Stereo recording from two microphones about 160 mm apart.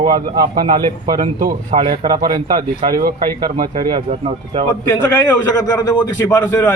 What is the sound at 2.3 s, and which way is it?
Speech, 25° right (ahead or behind).